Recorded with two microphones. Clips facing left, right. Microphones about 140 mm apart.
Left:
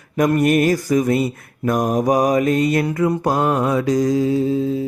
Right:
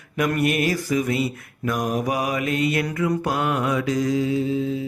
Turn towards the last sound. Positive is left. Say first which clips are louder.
# left 4 dB
turn(degrees=40)  # may be behind; listen again after turning